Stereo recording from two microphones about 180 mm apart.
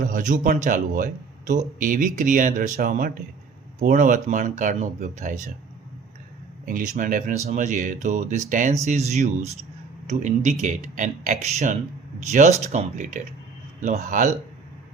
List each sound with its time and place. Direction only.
0.1 s speech: 45° right (ahead or behind)
6.7 s speech: 50° right (ahead or behind)